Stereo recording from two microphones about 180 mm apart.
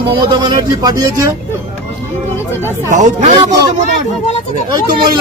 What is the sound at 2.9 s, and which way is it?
Speech, 40° right (ahead or behind).